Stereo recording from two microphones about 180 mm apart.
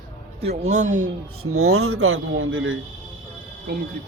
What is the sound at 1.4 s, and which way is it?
Speech, 90° right.